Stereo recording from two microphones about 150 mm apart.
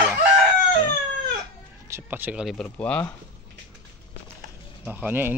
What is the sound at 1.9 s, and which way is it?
Speech, 15° right (ahead or behind).